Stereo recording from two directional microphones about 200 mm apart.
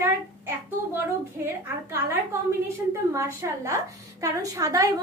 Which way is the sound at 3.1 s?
15° right (ahead or behind).